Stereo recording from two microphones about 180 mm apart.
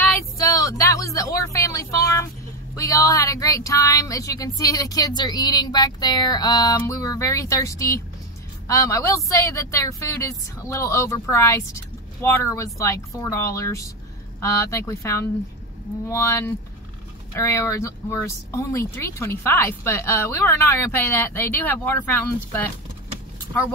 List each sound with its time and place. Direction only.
0.4 s speech: 20° left (ahead or behind)